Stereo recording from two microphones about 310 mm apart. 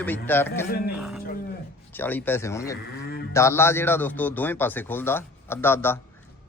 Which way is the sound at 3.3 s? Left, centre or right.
Centre.